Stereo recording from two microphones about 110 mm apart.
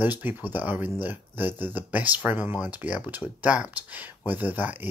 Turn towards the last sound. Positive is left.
turn(degrees=-15)  # may be behind; listen again after turning